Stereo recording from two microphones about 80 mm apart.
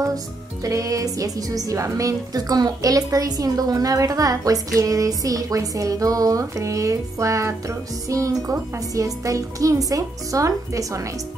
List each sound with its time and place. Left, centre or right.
0.0 s a woman's voice: right